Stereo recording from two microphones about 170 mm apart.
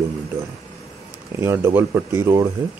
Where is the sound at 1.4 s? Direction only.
15° right (ahead or behind).